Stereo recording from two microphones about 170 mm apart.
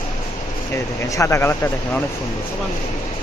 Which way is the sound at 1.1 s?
15° left (ahead or behind).